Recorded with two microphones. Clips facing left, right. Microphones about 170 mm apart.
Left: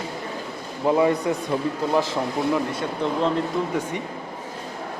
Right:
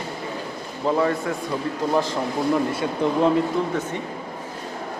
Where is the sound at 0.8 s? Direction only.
15° left (ahead or behind).